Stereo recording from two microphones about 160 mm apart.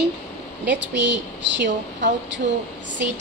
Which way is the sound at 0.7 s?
90° right.